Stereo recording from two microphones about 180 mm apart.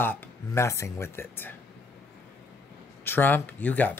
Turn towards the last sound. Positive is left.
turn(degrees=10)  # may be behind; listen again after turning